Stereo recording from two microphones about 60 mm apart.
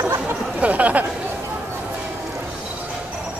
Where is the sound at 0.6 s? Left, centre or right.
Right.